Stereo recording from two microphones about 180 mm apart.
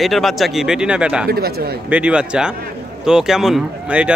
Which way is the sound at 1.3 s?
60° right (ahead or behind).